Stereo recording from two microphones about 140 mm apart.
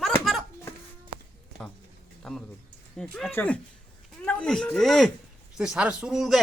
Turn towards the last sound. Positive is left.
turn(degrees=-5)  # may be behind; listen again after turning